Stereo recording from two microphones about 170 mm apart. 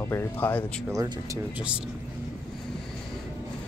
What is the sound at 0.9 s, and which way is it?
Speech, 20° right (ahead or behind).